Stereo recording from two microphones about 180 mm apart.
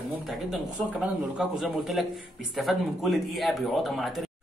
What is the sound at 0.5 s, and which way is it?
Speech, 5° right (ahead or behind).